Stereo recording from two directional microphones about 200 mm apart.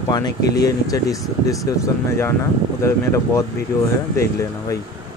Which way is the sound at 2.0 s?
10° left (ahead or behind).